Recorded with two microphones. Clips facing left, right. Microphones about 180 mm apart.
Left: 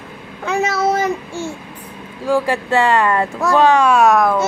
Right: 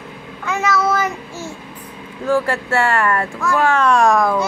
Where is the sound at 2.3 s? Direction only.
15° left (ahead or behind).